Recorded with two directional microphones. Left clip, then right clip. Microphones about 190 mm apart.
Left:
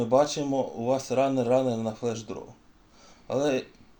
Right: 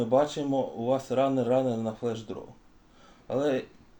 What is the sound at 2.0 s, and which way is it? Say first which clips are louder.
Speech: left 1 dB; 35° left (ahead or behind).